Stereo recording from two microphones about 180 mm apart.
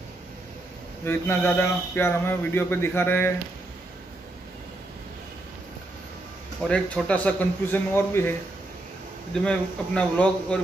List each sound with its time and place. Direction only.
1.0 s speech: 10° left (ahead or behind)
6.7 s speech: 5° left (ahead or behind)